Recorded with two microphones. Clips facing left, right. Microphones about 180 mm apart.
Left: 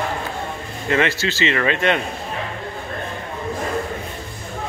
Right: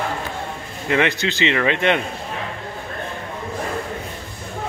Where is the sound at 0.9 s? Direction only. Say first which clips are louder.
Even; 15° right (ahead or behind).